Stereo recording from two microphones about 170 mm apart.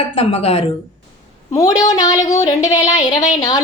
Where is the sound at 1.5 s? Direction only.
20° left (ahead or behind).